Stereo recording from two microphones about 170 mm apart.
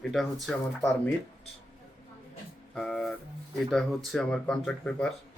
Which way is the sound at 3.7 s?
Centre (ahead or behind).